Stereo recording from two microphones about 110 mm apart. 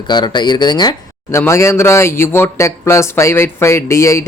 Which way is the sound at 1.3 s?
25° left (ahead or behind).